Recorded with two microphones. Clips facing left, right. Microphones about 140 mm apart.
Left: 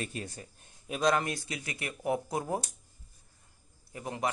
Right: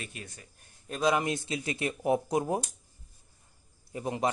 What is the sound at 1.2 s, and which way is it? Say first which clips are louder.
Speech: right 4 dB; 20° right (ahead or behind).